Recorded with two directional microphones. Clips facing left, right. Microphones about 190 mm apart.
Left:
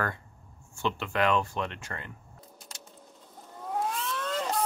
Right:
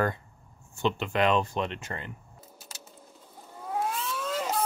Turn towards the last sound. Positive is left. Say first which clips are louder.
# right 1 dB
turn(degrees=-5)  # may be behind; listen again after turning